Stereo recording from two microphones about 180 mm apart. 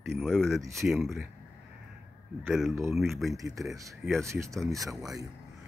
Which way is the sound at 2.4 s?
Centre (ahead or behind).